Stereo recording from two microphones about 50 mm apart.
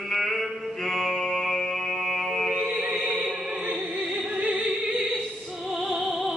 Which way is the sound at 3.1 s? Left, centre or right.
Centre.